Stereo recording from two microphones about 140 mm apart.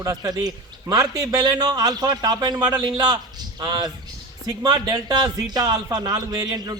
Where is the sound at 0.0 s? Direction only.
25° right (ahead or behind).